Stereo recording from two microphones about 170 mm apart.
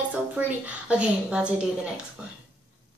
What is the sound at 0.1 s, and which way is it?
Speech, 10° right (ahead or behind).